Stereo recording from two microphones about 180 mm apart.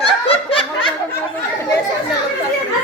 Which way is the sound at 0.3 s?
30° left (ahead or behind).